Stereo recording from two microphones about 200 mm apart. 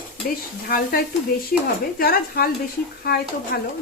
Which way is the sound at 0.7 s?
50° left (ahead or behind).